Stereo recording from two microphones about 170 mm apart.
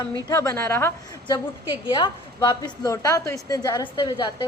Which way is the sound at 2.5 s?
25° left (ahead or behind).